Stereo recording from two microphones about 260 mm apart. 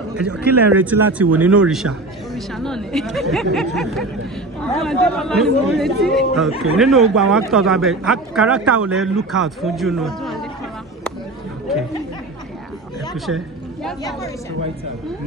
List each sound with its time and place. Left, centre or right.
0.2 s speech: centre
8.9 s speech: right
9.3 s speech: centre
13.3 s a woman's voice: right